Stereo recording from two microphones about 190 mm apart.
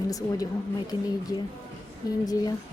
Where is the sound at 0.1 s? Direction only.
20° left (ahead or behind).